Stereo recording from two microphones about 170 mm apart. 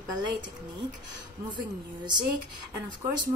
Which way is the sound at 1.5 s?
25° right (ahead or behind).